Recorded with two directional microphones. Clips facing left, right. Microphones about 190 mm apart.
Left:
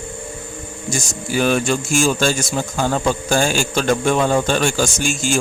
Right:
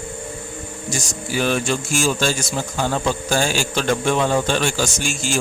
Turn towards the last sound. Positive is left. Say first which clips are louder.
# left 4 dB
turn(degrees=50)  # may be behind; listen again after turning